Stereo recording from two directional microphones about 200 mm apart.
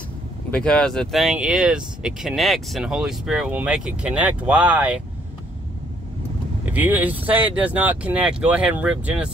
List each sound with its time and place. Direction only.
0.5 s speech: 5° left (ahead or behind)
6.7 s speech: 10° right (ahead or behind)